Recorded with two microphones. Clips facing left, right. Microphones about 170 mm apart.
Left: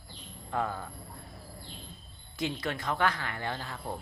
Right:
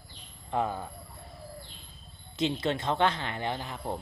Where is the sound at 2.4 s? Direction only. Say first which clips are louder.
Right 5 dB; 25° right (ahead or behind).